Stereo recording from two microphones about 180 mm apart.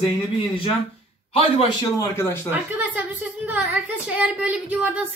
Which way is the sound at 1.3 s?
30° left (ahead or behind).